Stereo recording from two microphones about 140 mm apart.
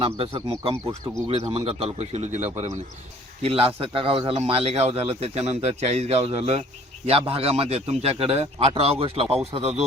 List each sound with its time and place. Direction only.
0.0 s a man's voice: 40° right (ahead or behind)
3.4 s a man's voice: 45° right (ahead or behind)